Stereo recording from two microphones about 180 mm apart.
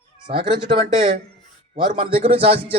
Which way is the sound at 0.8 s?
45° right (ahead or behind).